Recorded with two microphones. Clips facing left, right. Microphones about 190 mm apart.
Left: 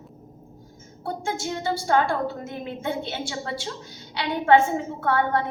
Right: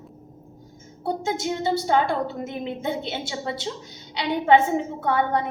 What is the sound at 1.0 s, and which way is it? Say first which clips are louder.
A woman's voice: right 3 dB; 20° right (ahead or behind).